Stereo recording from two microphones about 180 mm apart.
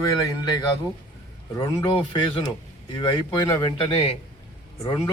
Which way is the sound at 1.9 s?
30° left (ahead or behind).